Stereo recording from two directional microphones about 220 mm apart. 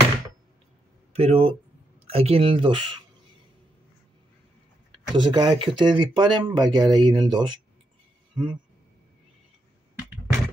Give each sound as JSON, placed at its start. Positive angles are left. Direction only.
{"t": 1.1, "sound": "speech", "side_deg": -30}
{"t": 4.9, "sound": "speech", "side_deg": -20}
{"t": 9.9, "sound": "a sound", "side_deg": -5}